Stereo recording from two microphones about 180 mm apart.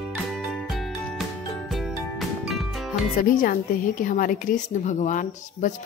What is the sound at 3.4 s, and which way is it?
A woman's voice, 50° left (ahead or behind).